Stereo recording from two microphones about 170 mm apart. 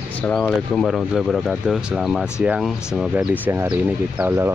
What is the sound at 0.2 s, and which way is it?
Speech, 5° left (ahead or behind).